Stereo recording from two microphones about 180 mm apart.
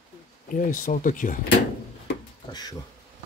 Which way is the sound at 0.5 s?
50° left (ahead or behind).